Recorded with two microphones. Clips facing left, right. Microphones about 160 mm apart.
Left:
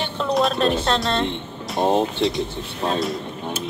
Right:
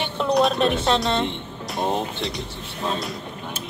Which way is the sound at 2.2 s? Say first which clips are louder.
Left 8 dB; centre (ahead or behind).